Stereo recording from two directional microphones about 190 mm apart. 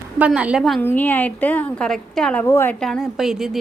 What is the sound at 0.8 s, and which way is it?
A woman's voice, 10° left (ahead or behind).